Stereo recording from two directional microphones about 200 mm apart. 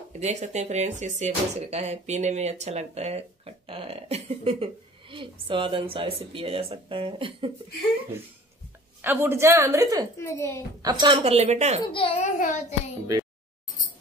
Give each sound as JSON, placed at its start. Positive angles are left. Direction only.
{"t": 0.2, "sound": "speech", "side_deg": -35}
{"t": 9.0, "sound": "a woman's voice", "side_deg": -10}
{"t": 10.1, "sound": "a child's voice", "side_deg": 15}
{"t": 10.8, "sound": "speech", "side_deg": -20}
{"t": 11.9, "sound": "a child's voice", "side_deg": 25}
{"t": 12.4, "sound": "child singing", "side_deg": 40}